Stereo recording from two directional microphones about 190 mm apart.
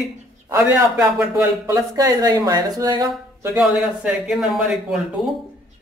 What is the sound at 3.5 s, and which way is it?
A man's voice, 5° right (ahead or behind).